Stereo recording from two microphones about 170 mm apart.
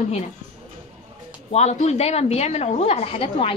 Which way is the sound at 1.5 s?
40° left (ahead or behind).